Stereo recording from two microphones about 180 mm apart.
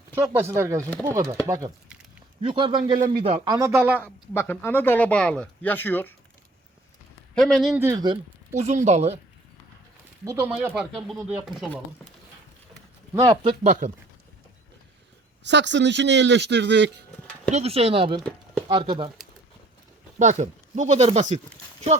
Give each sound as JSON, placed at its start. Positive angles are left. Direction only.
{"t": 0.1, "sound": "a man's voice", "side_deg": -15}
{"t": 4.0, "sound": "speech", "side_deg": 10}
{"t": 7.3, "sound": "speech", "side_deg": 0}
{"t": 7.8, "sound": "a man's voice", "side_deg": -20}
{"t": 8.5, "sound": "speech", "side_deg": -40}
{"t": 10.8, "sound": "speech", "side_deg": 0}
{"t": 13.3, "sound": "a man's voice", "side_deg": -25}
{"t": 13.7, "sound": "speech", "side_deg": -45}
{"t": 15.4, "sound": "speech", "side_deg": -80}
{"t": 17.5, "sound": "speech", "side_deg": -35}
{"t": 18.2, "sound": "chopping", "side_deg": 5}
{"t": 18.7, "sound": "a man's voice", "side_deg": -25}
{"t": 20.1, "sound": "speech", "side_deg": -40}